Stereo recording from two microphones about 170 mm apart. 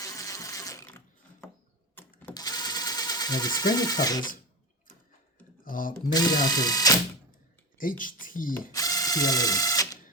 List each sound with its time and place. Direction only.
0.0 s water: 20° left (ahead or behind)
2.0 s mechanisms: 10° left (ahead or behind)
2.3 s sewing machine: 25° left (ahead or behind)
5.6 s speech: 55° left (ahead or behind)
6.1 s speech: 20° left (ahead or behind)
7.8 s speech: 55° left (ahead or behind)
8.7 s ratchet: 20° left (ahead or behind)